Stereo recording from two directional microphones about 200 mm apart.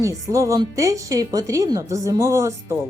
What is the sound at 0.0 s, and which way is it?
A woman's voice, 15° right (ahead or behind).